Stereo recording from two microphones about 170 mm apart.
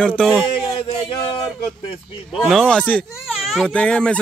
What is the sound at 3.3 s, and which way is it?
Speech, 5° right (ahead or behind).